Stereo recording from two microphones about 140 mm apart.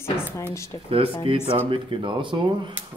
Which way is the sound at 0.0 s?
20° left (ahead or behind).